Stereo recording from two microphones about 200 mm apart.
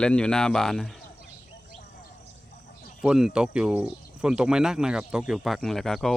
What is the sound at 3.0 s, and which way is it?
Speech, 5° right (ahead or behind).